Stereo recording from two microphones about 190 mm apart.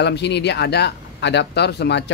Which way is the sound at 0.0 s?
65° left (ahead or behind).